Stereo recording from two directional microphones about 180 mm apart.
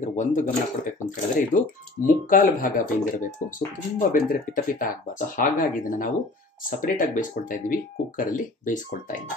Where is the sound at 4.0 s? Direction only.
50° left (ahead or behind).